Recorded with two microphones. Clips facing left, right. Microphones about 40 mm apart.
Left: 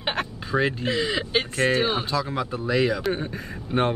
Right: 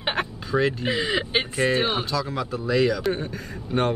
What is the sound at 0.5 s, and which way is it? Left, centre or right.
Speech, centre.